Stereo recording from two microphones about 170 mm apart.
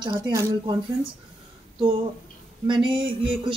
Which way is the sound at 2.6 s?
30° right (ahead or behind).